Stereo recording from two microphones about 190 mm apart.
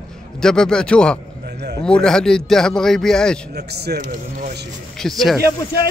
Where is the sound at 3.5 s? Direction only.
60° right (ahead or behind).